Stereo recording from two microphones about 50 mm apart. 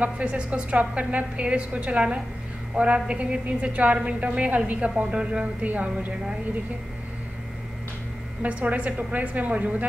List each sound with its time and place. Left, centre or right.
0.0 s a woman's voice: right
8.4 s a woman's voice: right